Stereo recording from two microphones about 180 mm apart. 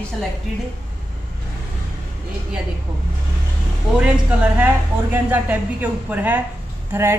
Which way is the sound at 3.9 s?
5° right (ahead or behind).